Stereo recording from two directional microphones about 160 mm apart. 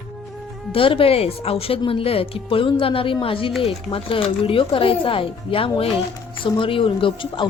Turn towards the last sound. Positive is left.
turn(degrees=35)  # may be behind; listen again after turning